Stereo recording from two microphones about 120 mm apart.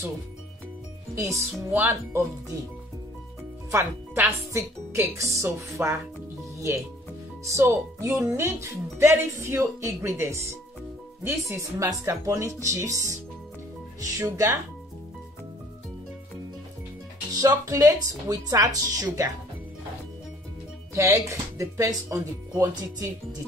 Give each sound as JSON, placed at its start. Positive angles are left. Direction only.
{"t": 1.1, "sound": "speech", "side_deg": -25}
{"t": 3.7, "sound": "speech", "side_deg": -20}
{"t": 7.4, "sound": "speech", "side_deg": -25}
{"t": 17.4, "sound": "speech", "side_deg": -30}
{"t": 20.9, "sound": "speech", "side_deg": -25}